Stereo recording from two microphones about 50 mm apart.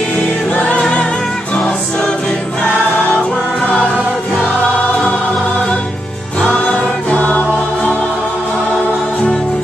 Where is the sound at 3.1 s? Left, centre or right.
Centre; by 7.6 s left.